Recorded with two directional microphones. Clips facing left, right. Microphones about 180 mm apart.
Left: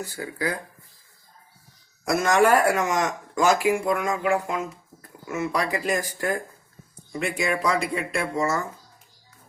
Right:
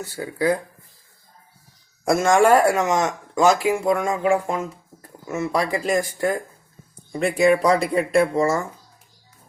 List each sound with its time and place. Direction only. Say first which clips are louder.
0.2 s speech: right 8 dB; 25° right (ahead or behind)
2.0 s speech: right 3 dB; 25° right (ahead or behind)